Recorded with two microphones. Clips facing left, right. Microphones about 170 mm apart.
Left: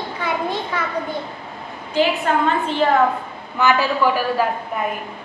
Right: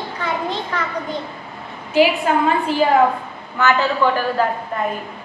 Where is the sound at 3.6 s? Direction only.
15° left (ahead or behind).